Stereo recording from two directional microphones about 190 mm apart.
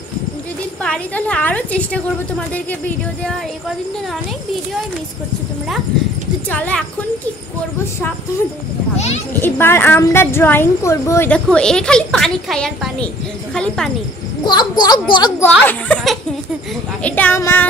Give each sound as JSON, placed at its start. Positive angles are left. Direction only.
{"t": 0.8, "sound": "a woman's voice", "side_deg": 5}
{"t": 6.5, "sound": "a woman's voice", "side_deg": 10}
{"t": 9.4, "sound": "a woman's voice", "side_deg": 10}
{"t": 14.4, "sound": "a child's voice", "side_deg": 20}
{"t": 15.6, "sound": "a woman's voice", "side_deg": 5}